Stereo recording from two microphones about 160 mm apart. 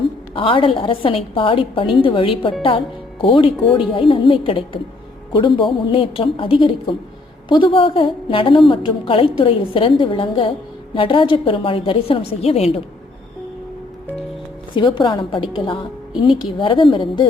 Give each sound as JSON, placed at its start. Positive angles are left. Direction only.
{"t": 0.3, "sound": "a woman's voice", "side_deg": 35}
{"t": 14.8, "sound": "a woman's voice", "side_deg": 30}